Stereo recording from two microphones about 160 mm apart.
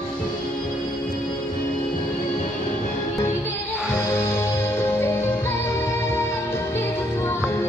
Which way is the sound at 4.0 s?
15° left (ahead or behind).